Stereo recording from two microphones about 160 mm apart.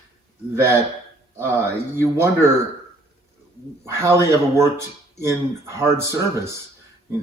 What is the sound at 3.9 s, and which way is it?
Speech, 20° right (ahead or behind).